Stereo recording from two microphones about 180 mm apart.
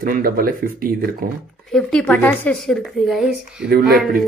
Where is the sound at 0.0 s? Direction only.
55° right (ahead or behind).